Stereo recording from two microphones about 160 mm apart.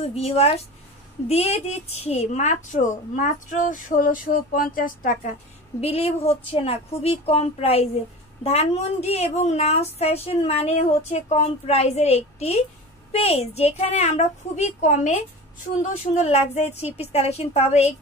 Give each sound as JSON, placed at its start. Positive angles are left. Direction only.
{"t": 0.0, "sound": "a woman's voice", "side_deg": 40}
{"t": 5.8, "sound": "a woman's voice", "side_deg": 40}